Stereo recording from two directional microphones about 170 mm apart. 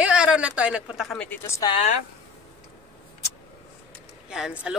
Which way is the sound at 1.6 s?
20° left (ahead or behind).